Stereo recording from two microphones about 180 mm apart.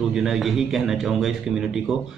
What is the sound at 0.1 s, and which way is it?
A man's voice, centre (ahead or behind).